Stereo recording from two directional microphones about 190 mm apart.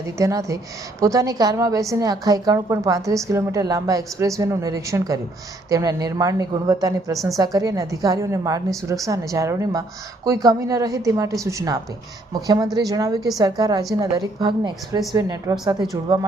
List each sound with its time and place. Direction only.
0.2 s a woman's voice: 15° right (ahead or behind)